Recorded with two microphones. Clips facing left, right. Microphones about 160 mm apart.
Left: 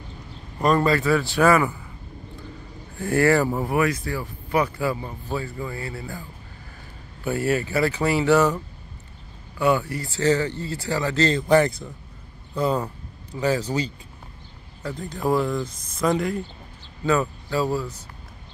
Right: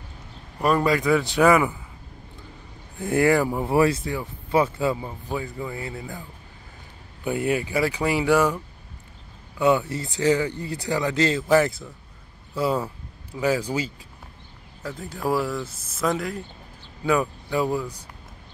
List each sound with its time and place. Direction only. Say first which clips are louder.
0.6 s speech: left 1 dB; 10° right (ahead or behind)
3.0 s speech: left 1 dB; 20° right (ahead or behind)
3.6 s speech: right 2 dB; 30° right (ahead or behind)
7.2 s speech: left 1 dB; 15° right (ahead or behind)
9.6 s speech: right 1 dB; 20° right (ahead or behind); by 16.4 s centre (ahead or behind)
17.0 s speech: even; 10° right (ahead or behind)